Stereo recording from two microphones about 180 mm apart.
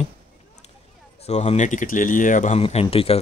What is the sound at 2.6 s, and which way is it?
Speech, 35° left (ahead or behind).